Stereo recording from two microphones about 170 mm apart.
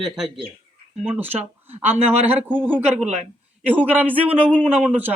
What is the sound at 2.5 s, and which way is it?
Speech, 10° right (ahead or behind).